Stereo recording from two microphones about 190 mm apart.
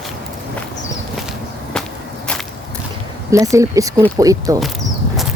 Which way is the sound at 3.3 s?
15° right (ahead or behind).